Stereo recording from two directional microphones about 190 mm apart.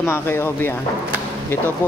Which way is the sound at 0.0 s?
15° left (ahead or behind).